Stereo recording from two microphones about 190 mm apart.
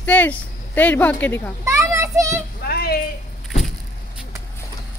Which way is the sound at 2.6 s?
55° left (ahead or behind).